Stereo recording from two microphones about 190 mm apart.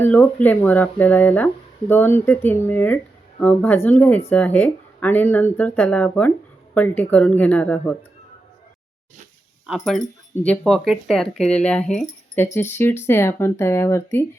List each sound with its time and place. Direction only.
0.0 s speech: 10° left (ahead or behind)
9.6 s speech: centre (ahead or behind)